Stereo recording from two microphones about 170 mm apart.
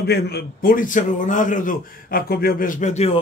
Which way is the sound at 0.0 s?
70° left (ahead or behind).